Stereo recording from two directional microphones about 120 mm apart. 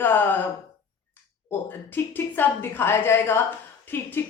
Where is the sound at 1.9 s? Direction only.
15° left (ahead or behind).